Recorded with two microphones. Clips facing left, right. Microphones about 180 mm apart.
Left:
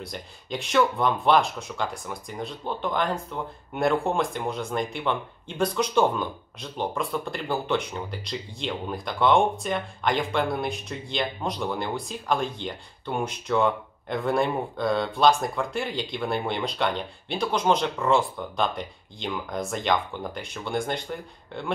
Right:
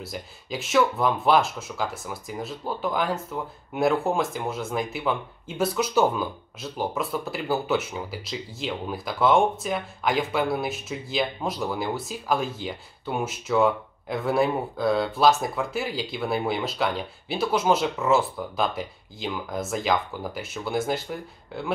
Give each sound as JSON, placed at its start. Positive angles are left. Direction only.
{"t": 0.0, "sound": "speech", "side_deg": -5}